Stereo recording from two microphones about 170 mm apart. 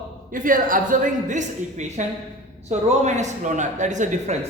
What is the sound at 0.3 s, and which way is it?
A man's voice, 50° right (ahead or behind).